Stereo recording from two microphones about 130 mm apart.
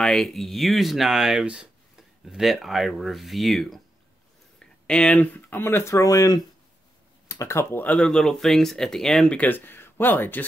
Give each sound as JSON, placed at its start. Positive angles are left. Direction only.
{"t": 0.0, "sound": "speech", "side_deg": 5}